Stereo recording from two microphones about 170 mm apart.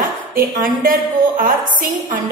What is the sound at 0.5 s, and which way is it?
A woman's voice, 55° right (ahead or behind).